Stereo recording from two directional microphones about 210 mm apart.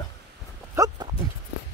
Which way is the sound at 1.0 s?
20° right (ahead or behind).